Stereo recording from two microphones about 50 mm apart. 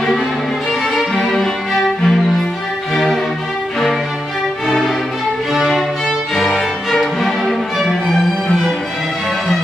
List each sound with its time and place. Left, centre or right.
0.9 s music: centre
5.6 s music: centre